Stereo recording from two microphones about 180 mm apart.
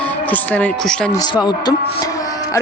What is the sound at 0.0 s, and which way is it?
Speech, 10° left (ahead or behind).